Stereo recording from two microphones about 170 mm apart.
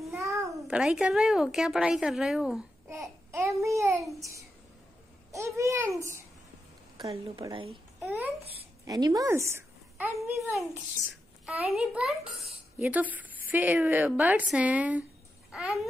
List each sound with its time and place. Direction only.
0.3 s a sound: 20° right (ahead or behind)
0.6 s a woman's voice: 5° right (ahead or behind)
2.9 s babbling: 15° right (ahead or behind)
3.6 s a woman's voice: 20° right (ahead or behind)
4.1 s a sound: 20° right (ahead or behind)
5.3 s a woman's voice: 15° right (ahead or behind)
7.0 s a woman's voice: 35° right (ahead or behind)
8.8 s a child's voice: 20° right (ahead or behind)
10.1 s a child's voice: centre (ahead or behind)